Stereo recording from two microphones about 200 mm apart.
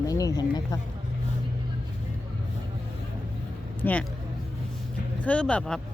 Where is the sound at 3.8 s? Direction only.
10° left (ahead or behind).